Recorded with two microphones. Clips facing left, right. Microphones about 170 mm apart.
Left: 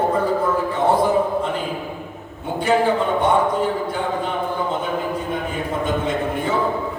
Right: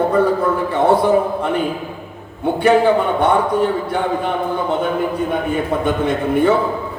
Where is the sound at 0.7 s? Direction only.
65° right (ahead or behind).